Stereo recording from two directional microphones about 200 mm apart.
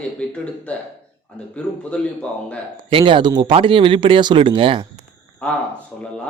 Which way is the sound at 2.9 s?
25° right (ahead or behind).